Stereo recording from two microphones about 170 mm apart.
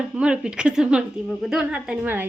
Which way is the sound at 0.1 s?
5° right (ahead or behind).